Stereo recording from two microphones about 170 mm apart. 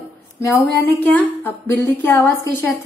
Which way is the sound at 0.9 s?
10° left (ahead or behind).